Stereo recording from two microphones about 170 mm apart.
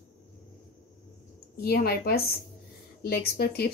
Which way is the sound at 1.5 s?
65° left (ahead or behind).